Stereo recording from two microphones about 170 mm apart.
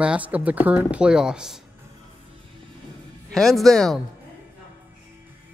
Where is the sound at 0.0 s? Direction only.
5° right (ahead or behind).